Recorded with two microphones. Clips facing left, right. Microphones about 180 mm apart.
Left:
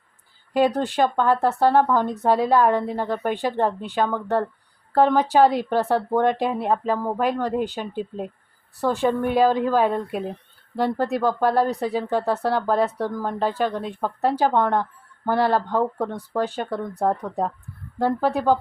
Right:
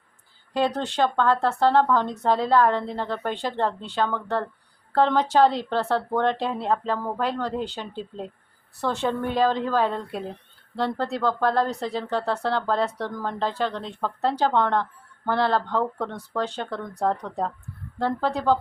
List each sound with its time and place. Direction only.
0.5 s speech: 10° left (ahead or behind)